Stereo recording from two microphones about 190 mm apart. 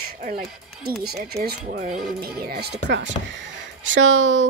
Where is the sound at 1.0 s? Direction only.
55° right (ahead or behind).